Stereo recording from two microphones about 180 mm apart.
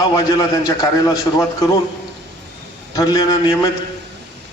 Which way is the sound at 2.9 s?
20° left (ahead or behind).